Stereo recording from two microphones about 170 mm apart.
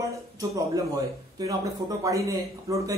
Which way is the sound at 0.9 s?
20° right (ahead or behind).